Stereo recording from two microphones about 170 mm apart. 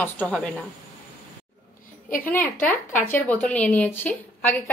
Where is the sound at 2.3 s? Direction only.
10° left (ahead or behind).